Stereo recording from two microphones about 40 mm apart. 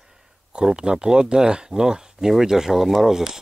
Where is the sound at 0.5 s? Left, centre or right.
Right.